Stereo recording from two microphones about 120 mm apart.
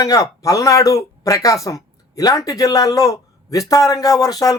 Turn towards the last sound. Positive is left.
turn(degrees=30)  # may be behind; listen again after turning